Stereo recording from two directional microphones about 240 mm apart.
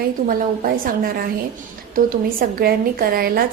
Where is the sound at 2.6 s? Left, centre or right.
Right.